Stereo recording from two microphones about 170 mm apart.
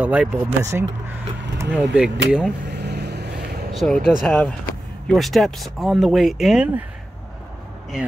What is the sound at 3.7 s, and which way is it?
Speech, centre (ahead or behind).